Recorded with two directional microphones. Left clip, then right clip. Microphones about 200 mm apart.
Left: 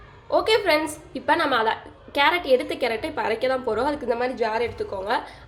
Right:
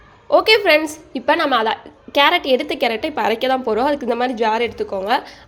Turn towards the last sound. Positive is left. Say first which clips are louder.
# right 6 dB
turn(degrees=-45)  # may be behind; listen again after turning